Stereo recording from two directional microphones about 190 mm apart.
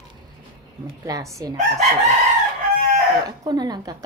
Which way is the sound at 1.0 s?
15° right (ahead or behind).